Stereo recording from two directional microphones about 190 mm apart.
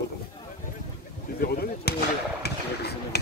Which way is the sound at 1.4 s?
55° left (ahead or behind).